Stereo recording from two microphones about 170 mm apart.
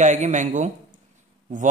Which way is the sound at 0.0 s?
45° right (ahead or behind).